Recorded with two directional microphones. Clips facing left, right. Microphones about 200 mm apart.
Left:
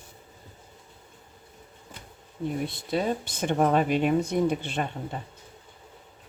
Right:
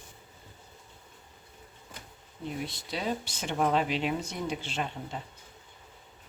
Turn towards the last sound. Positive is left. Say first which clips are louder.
# left 4 dB
turn(degrees=55)  # may be behind; listen again after turning